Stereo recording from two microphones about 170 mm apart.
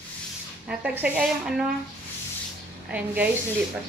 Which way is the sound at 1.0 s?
5° right (ahead or behind).